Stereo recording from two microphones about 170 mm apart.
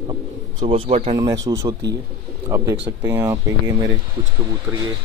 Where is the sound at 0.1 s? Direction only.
30° right (ahead or behind).